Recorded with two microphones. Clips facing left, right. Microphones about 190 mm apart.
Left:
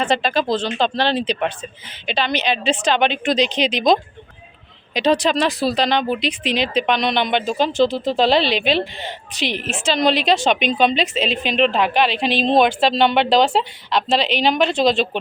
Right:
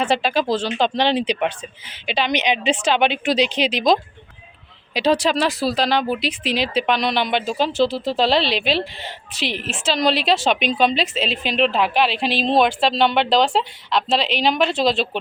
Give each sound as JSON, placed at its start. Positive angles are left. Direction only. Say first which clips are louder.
{"t": 0.0, "sound": "a man's voice", "louder": "even", "side_deg": -10}